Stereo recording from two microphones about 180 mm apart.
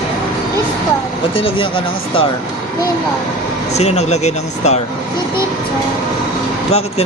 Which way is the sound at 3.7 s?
35° left (ahead or behind).